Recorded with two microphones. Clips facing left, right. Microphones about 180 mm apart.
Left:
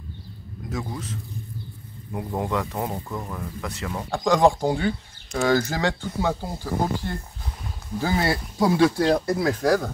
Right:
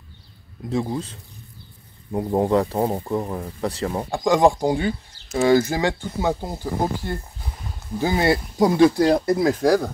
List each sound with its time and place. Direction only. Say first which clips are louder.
0.7 s a man's voice: right 7 dB; 30° right (ahead or behind)
4.1 s speech: right 1 dB; 15° right (ahead or behind)